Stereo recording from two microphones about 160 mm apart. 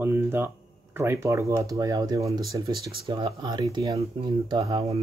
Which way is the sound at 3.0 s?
35° right (ahead or behind).